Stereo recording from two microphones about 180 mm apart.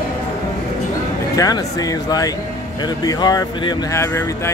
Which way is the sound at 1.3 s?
20° left (ahead or behind).